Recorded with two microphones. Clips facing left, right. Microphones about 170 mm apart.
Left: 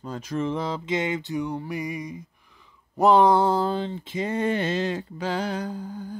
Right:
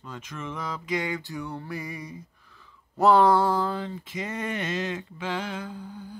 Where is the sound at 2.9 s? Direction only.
20° left (ahead or behind); by 6.2 s 45° left (ahead or behind).